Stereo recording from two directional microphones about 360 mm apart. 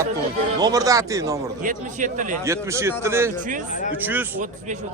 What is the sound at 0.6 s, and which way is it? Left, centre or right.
Speech, centre.